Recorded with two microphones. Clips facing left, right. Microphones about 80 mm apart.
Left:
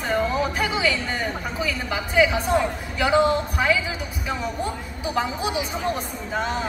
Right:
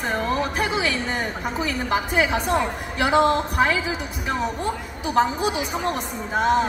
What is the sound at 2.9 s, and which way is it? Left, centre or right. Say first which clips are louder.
Speech: right 1 dB; right.